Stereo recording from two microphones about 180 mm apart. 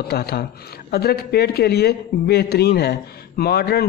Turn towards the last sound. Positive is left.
turn(degrees=60)  # may be behind; listen again after turning